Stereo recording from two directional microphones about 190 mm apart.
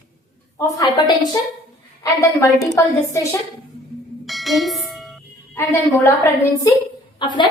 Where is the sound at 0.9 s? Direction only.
20° left (ahead or behind).